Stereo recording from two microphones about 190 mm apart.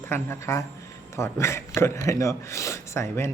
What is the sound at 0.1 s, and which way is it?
A man's voice, 15° left (ahead or behind).